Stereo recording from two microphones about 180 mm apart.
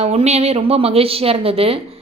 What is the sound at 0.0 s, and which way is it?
A woman's voice, 35° right (ahead or behind).